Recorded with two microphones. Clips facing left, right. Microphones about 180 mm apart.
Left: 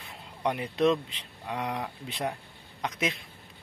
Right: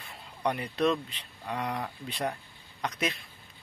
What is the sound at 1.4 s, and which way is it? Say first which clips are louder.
Speech: even; 5° left (ahead or behind).